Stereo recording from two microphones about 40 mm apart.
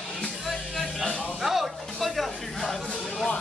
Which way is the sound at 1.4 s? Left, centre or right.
Centre.